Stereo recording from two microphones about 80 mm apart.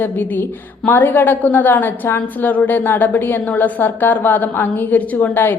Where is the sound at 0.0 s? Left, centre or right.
Left.